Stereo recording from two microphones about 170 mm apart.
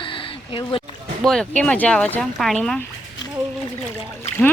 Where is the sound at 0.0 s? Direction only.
30° left (ahead or behind).